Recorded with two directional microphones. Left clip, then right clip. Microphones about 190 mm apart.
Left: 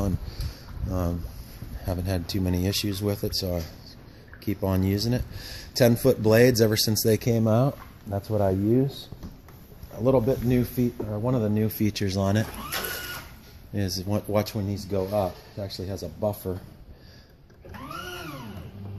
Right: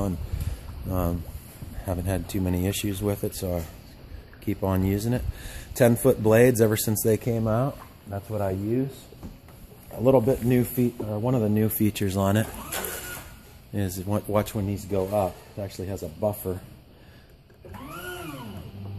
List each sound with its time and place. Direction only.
0.8 s speech: 10° right (ahead or behind)
1.9 s speech: centre (ahead or behind)
7.2 s speech: 20° left (ahead or behind)
9.9 s speech: 10° right (ahead or behind)
13.7 s speech: centre (ahead or behind)